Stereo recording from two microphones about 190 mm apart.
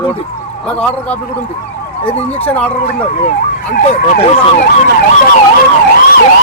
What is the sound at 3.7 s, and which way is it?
Speech, 45° left (ahead or behind).